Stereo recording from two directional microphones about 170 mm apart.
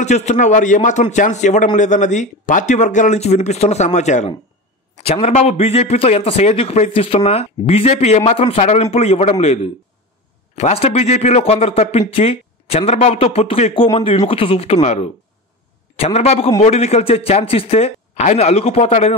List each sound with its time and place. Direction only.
0.0 s speech: 40° left (ahead or behind)